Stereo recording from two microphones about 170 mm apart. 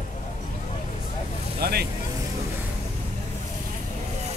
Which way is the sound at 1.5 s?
70° right (ahead or behind).